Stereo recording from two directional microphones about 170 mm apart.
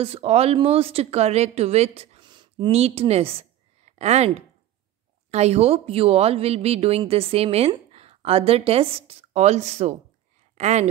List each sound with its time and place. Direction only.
0.0 s speech: 35° right (ahead or behind)
2.2 s a woman's voice: 25° right (ahead or behind)